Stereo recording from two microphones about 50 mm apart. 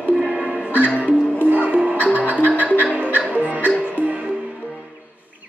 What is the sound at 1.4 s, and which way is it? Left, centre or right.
Music, right.